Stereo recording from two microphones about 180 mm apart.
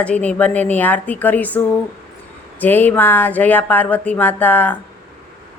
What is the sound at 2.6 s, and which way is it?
A woman's voice, 10° left (ahead or behind).